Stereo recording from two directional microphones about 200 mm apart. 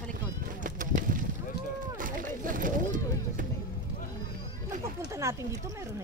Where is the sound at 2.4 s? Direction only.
40° right (ahead or behind).